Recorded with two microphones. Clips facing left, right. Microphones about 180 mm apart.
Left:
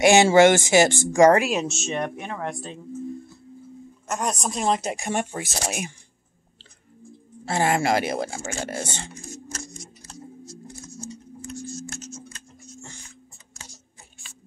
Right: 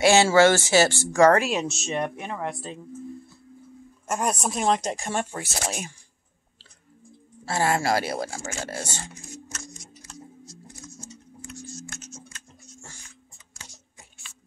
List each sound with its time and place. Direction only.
0.0 s speech: 15° left (ahead or behind)
1.9 s speech: 5° right (ahead or behind)
4.1 s speech: 10° right (ahead or behind); by 5.9 s 15° left (ahead or behind)
7.4 s speech: 20° left (ahead or behind)
9.5 s a sound: 35° left (ahead or behind)